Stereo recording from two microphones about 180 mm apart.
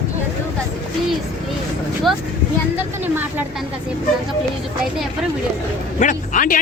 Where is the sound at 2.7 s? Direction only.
10° right (ahead or behind).